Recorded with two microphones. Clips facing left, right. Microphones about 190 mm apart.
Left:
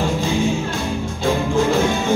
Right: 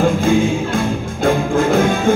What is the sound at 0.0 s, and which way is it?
Music, 55° right (ahead or behind).